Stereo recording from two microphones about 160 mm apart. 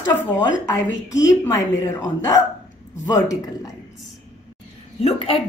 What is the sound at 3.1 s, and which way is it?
Speech, 20° left (ahead or behind).